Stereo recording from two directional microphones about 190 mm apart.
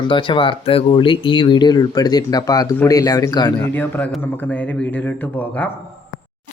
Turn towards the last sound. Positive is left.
turn(degrees=10)  # may be behind; listen again after turning